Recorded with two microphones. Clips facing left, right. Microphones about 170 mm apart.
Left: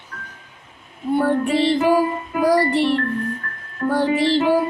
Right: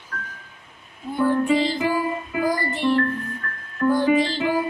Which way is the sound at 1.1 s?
70° left (ahead or behind).